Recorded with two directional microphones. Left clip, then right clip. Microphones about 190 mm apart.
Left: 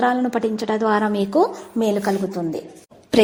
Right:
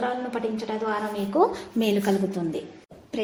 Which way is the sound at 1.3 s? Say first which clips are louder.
Even; 15° left (ahead or behind).